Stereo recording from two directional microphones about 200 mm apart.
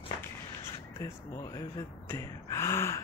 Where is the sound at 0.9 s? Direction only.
15° left (ahead or behind).